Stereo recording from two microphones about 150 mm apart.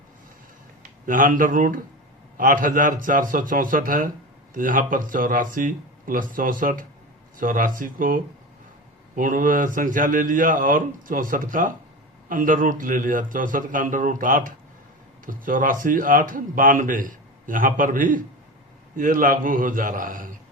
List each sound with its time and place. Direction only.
0.8 s speech: 65° right (ahead or behind)